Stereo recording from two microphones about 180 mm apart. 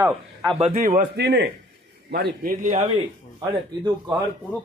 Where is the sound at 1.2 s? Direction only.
70° right (ahead or behind).